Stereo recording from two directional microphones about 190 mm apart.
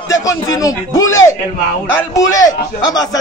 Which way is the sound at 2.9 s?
20° left (ahead or behind).